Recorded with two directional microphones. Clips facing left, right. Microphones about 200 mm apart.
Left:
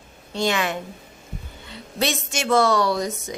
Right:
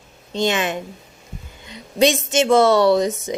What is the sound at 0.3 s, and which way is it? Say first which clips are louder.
A woman's voice: right 3 dB; 20° right (ahead or behind).